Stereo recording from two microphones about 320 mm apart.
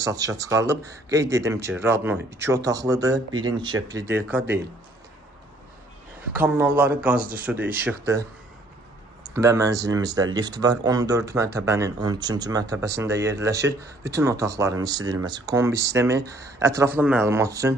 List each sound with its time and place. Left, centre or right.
0.0 s speech: centre
6.3 s speech: centre